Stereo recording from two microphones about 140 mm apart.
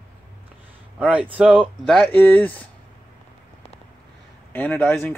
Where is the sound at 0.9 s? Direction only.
10° right (ahead or behind).